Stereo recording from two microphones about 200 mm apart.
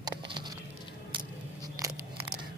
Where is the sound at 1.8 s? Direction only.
15° right (ahead or behind).